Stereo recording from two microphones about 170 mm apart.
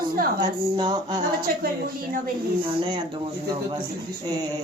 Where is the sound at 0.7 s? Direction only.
25° right (ahead or behind).